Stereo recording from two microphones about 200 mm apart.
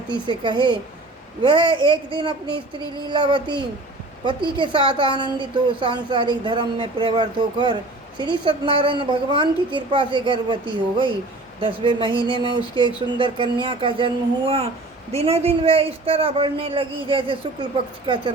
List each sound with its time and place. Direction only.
0.1 s speech: 25° right (ahead or behind)
12.3 s a sound: 20° left (ahead or behind)
12.7 s speech: 25° right (ahead or behind)